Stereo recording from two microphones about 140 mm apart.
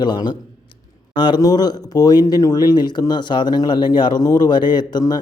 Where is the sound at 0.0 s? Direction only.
30° left (ahead or behind).